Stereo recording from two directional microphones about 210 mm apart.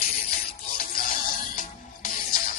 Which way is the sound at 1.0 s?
40° left (ahead or behind).